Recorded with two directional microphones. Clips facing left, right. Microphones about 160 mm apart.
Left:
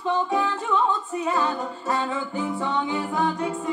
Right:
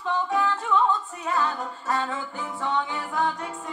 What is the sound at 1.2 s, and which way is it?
Music, 20° left (ahead or behind).